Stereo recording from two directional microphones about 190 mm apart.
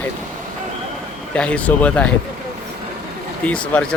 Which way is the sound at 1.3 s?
5° left (ahead or behind).